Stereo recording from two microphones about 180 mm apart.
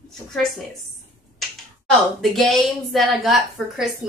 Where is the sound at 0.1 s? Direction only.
Centre (ahead or behind).